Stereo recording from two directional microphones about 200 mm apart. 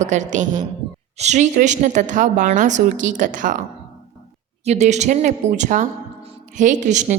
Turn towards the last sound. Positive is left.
turn(degrees=-35)  # may be behind; listen again after turning